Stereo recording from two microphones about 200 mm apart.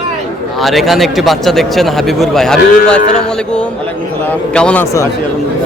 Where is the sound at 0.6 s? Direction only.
Centre (ahead or behind).